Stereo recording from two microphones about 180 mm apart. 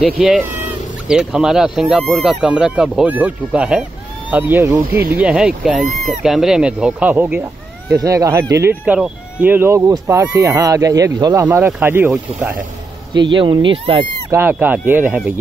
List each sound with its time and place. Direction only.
0.0 s speech: 5° right (ahead or behind)
13.1 s speech: 25° right (ahead or behind)
14.3 s speech: 10° right (ahead or behind)